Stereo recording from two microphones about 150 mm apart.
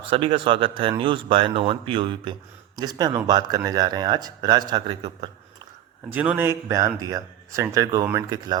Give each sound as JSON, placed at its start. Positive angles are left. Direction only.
{"t": 0.1, "sound": "speech", "side_deg": -35}
{"t": 6.1, "sound": "speech", "side_deg": -10}